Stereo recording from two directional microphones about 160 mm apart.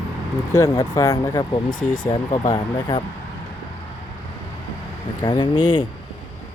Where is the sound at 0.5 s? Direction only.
25° left (ahead or behind).